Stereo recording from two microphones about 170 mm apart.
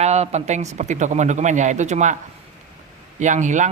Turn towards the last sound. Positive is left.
turn(degrees=-45)  # may be behind; listen again after turning